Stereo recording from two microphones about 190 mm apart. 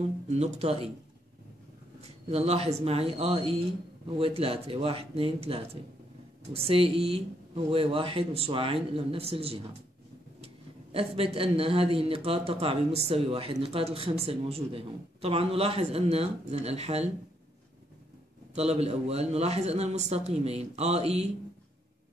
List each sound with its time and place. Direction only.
0.3 s speech: 35° right (ahead or behind)
2.2 s speech: 35° right (ahead or behind)
18.5 s speech: 35° right (ahead or behind)